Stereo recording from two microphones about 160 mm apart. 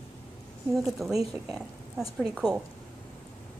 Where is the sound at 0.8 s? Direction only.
Centre (ahead or behind).